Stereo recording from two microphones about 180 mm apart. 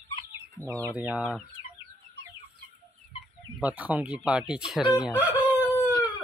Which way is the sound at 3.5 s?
10° right (ahead or behind).